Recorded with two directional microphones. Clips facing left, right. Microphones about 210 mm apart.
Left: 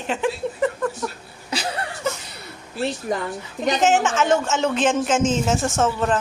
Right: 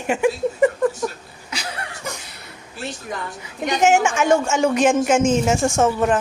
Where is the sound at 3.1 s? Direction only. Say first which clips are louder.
Left 4 dB; 40° left (ahead or behind).